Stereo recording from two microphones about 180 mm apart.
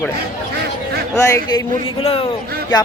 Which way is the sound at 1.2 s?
15° left (ahead or behind).